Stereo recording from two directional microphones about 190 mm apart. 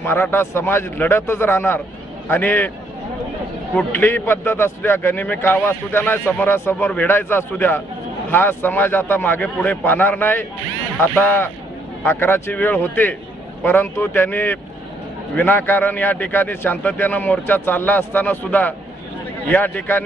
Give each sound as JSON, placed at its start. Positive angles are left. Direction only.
{"t": 0.0, "sound": "a man's voice", "side_deg": 10}
{"t": 3.7, "sound": "a man's voice", "side_deg": 10}